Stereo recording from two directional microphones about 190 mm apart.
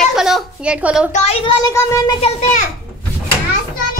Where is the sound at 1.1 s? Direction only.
30° left (ahead or behind).